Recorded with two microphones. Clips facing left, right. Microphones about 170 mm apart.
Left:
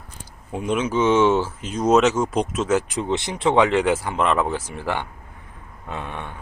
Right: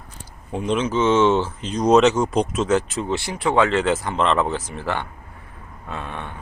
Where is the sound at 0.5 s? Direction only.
10° left (ahead or behind).